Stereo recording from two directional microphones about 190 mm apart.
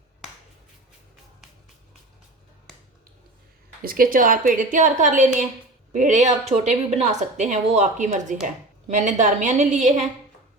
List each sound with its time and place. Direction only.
3.8 s a woman's voice: 50° right (ahead or behind)